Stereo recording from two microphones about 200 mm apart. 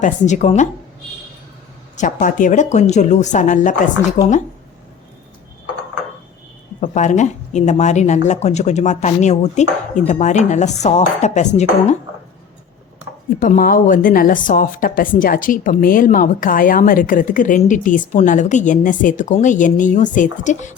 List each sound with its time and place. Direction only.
0.0 s chopping: 35° left (ahead or behind)
2.0 s chopping: 40° left (ahead or behind)
6.7 s chopping: 35° left (ahead or behind)
13.4 s a woman's voice: 45° left (ahead or behind)
18.1 s chopping: 35° left (ahead or behind)